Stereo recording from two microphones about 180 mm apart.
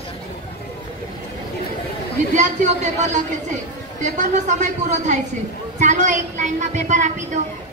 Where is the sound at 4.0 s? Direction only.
40° right (ahead or behind).